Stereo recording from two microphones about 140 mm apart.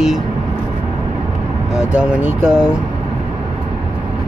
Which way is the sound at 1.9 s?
10° right (ahead or behind).